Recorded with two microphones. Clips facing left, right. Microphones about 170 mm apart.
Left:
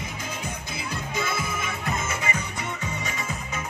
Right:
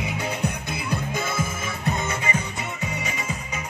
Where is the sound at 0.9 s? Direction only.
50° right (ahead or behind).